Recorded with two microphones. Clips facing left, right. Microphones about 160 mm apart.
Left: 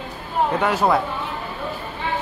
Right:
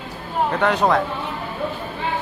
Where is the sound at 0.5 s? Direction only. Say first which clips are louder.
Right 2 dB; 5° left (ahead or behind).